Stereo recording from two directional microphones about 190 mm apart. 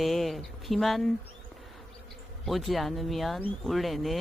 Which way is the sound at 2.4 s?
Centre (ahead or behind).